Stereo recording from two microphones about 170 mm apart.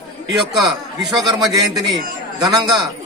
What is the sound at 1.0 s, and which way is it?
Speech, centre (ahead or behind).